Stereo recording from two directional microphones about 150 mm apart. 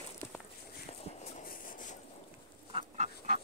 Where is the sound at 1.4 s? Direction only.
60° left (ahead or behind).